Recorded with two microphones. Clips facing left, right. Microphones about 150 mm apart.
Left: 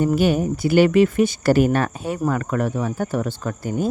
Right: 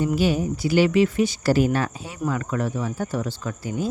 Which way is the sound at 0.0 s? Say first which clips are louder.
Left 3 dB; 55° left (ahead or behind).